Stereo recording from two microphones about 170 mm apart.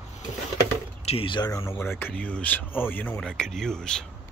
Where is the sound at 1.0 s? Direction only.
35° left (ahead or behind); by 4.0 s 5° left (ahead or behind).